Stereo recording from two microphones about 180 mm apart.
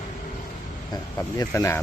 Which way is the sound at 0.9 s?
15° left (ahead or behind).